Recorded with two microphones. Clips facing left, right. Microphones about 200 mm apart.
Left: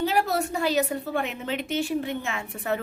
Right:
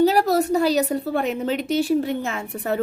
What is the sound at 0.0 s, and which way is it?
A woman's voice, 40° right (ahead or behind).